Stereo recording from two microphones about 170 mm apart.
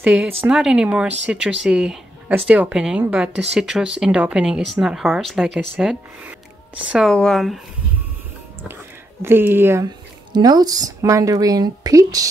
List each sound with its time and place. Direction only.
0.0 s speech: 10° right (ahead or behind)
9.2 s speech: 10° right (ahead or behind)
10.3 s speech: 25° right (ahead or behind)